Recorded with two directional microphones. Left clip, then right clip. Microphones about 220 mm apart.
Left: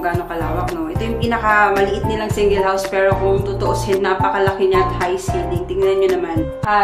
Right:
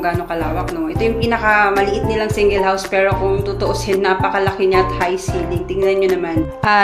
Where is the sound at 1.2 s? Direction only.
10° right (ahead or behind).